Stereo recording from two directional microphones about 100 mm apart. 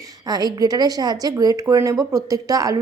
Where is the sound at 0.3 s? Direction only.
40° right (ahead or behind).